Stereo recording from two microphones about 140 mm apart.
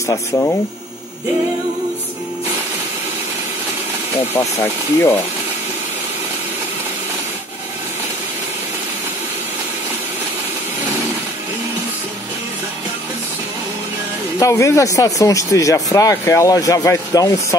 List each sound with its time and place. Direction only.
0.0 s speech: 25° left (ahead or behind)
4.4 s speech: 25° left (ahead or behind)
14.4 s speech: 20° left (ahead or behind)